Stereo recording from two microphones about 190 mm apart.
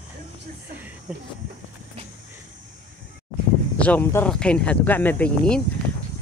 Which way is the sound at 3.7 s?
5° left (ahead or behind).